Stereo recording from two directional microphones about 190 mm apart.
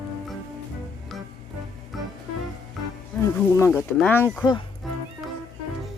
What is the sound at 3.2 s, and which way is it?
Speech, 15° left (ahead or behind).